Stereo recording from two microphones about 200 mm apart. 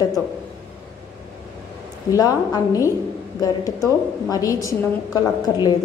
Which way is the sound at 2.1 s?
20° left (ahead or behind).